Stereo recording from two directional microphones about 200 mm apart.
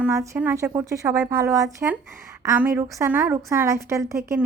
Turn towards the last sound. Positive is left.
turn(degrees=-15)  # may be behind; listen again after turning